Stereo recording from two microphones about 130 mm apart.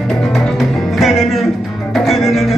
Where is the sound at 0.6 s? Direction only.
Centre (ahead or behind).